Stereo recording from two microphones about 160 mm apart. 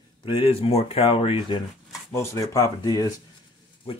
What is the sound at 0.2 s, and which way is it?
Speech, 30° left (ahead or behind).